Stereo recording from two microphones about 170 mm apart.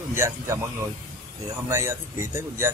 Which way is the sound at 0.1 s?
15° right (ahead or behind).